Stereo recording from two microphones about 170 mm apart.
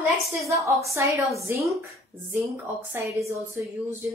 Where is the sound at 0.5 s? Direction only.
15° right (ahead or behind).